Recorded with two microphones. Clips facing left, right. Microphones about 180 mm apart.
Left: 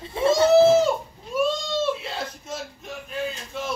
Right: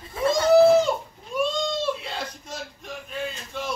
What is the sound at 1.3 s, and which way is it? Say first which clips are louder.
Cat: left 2 dB; 5° left (ahead or behind).